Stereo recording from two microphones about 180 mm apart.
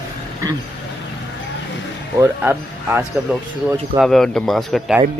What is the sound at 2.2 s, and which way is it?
Speech, 10° right (ahead or behind).